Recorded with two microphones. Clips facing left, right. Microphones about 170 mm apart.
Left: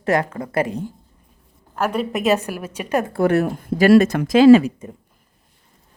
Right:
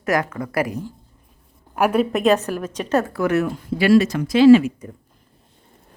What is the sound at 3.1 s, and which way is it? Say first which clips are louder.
Speech: left 6 dB; 30° left (ahead or behind).